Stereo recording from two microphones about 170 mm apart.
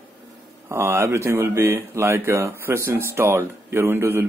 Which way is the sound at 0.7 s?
15° right (ahead or behind).